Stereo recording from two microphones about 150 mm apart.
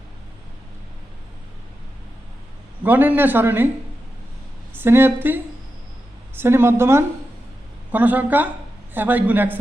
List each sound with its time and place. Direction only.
2.8 s speech: 10° right (ahead or behind)
4.8 s speech: 15° right (ahead or behind)